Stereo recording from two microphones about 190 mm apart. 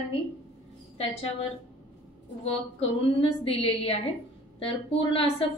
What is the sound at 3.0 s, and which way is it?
A woman's voice, 30° left (ahead or behind).